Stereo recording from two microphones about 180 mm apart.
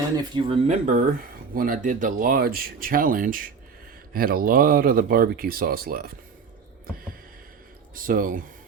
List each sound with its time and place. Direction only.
0.2 s speech: 25° right (ahead or behind)
0.7 s speech: 45° right (ahead or behind)
7.9 s speech: 50° right (ahead or behind)